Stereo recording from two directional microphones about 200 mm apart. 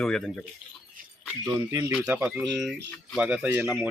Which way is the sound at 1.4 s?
15° right (ahead or behind).